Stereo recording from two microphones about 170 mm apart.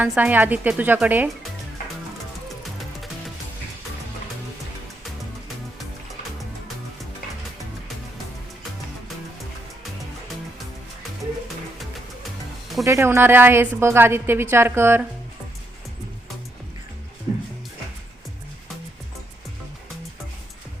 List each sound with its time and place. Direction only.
0.0 s a woman's voice: 10° right (ahead or behind)
12.8 s a woman's voice: 15° right (ahead or behind)